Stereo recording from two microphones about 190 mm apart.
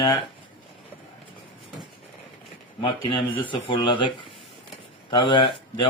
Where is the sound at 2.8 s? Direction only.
25° left (ahead or behind).